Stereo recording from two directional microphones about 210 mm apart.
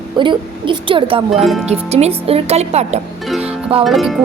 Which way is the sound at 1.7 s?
30° right (ahead or behind).